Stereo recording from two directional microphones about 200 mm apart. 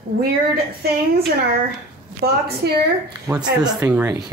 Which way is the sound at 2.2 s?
50° right (ahead or behind).